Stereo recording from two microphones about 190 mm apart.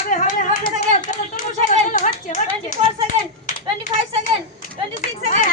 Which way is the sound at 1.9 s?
45° left (ahead or behind).